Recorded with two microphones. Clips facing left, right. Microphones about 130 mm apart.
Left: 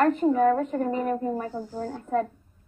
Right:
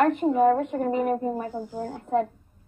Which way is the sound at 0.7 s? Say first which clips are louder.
Right 2 dB; 10° right (ahead or behind).